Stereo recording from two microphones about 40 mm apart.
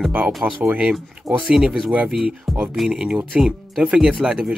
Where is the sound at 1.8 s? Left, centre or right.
Right.